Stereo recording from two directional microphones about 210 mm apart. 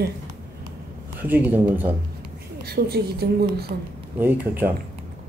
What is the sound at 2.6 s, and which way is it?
Speech, 50° right (ahead or behind).